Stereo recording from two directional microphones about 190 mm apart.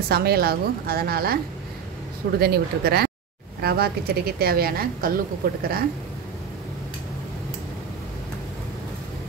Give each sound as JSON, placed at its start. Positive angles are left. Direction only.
{"t": 0.1, "sound": "a woman's voice", "side_deg": -55}